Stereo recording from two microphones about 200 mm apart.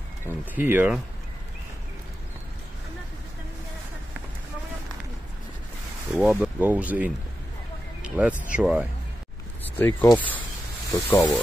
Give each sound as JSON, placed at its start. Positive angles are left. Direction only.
{"t": 0.3, "sound": "speech", "side_deg": -10}
{"t": 6.1, "sound": "speech", "side_deg": -5}
{"t": 9.6, "sound": "a sound", "side_deg": 10}
{"t": 10.1, "sound": "speech", "side_deg": 10}